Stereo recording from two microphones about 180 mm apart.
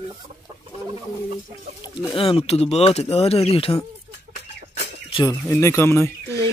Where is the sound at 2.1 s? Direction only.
30° left (ahead or behind).